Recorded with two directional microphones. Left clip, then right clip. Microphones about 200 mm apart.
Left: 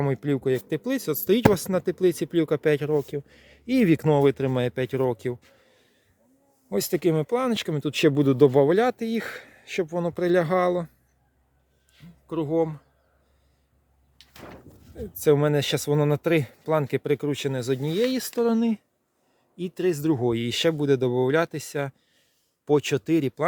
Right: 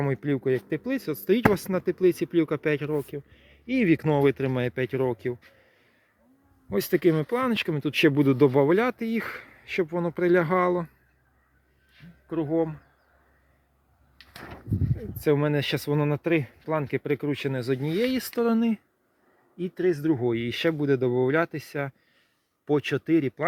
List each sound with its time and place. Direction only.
0.0 s speech: 10° left (ahead or behind)
3.1 s speech: 30° left (ahead or behind)
5.5 s a sound: 15° left (ahead or behind)
6.7 s speech: 5° left (ahead or behind)
12.3 s speech: 15° left (ahead or behind)
15.2 s speech: 15° left (ahead or behind)